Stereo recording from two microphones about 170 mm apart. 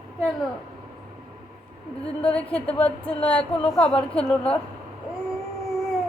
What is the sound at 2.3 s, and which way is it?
A woman's voice, 5° left (ahead or behind).